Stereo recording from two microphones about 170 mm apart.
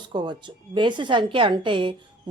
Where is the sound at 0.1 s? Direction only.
25° right (ahead or behind).